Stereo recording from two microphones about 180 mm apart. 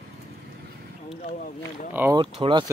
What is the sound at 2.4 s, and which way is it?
Speech, 25° right (ahead or behind).